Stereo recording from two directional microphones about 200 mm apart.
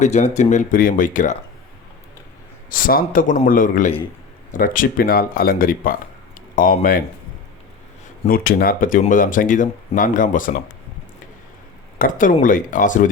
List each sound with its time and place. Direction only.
0.0 s speech: 35° left (ahead or behind)
2.6 s speech: 45° left (ahead or behind)
8.3 s speech: 45° left (ahead or behind)
11.9 s speech: 40° left (ahead or behind)